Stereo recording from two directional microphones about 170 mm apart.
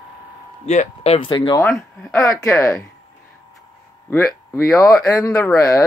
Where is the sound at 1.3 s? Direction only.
25° left (ahead or behind).